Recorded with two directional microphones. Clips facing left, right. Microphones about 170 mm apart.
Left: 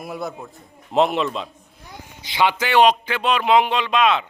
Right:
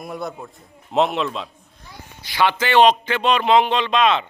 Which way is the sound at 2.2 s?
20° left (ahead or behind).